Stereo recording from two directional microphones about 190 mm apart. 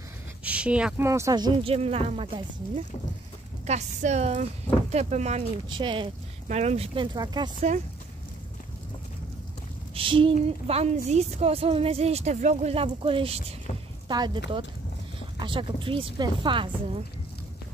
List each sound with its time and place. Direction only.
0.4 s speech: 5° right (ahead or behind); by 7.5 s 25° right (ahead or behind)
9.9 s speech: 25° right (ahead or behind)